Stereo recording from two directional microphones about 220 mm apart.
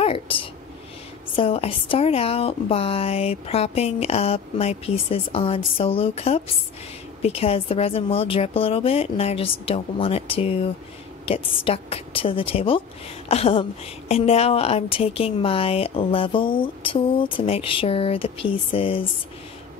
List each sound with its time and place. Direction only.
0.0 s a woman's voice: 25° left (ahead or behind)